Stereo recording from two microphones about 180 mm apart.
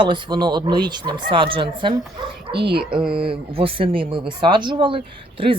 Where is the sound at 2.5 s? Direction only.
65° right (ahead or behind).